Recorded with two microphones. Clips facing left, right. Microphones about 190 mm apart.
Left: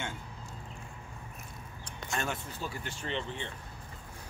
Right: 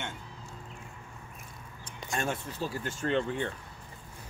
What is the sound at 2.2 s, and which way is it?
Speech, 35° right (ahead or behind).